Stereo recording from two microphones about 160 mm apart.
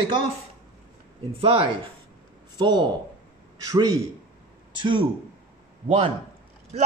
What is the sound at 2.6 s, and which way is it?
A man's voice, 30° right (ahead or behind).